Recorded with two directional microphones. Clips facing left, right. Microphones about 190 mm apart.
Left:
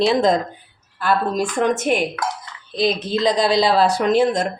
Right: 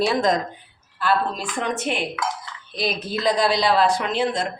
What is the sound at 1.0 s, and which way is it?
Speech, 45° left (ahead or behind).